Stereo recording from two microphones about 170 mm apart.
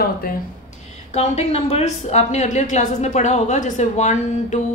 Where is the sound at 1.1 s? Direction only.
40° left (ahead or behind).